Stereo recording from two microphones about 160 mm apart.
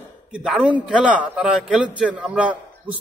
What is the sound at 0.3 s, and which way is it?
A man's voice, 5° right (ahead or behind).